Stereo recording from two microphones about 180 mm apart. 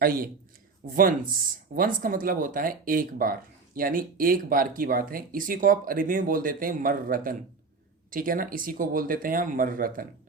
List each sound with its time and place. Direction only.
0.0 s speech: 55° right (ahead or behind)